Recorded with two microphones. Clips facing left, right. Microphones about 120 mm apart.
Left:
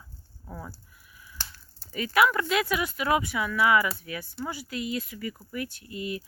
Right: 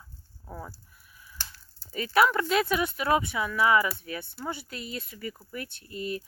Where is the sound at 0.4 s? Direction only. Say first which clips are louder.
Even; 20° right (ahead or behind).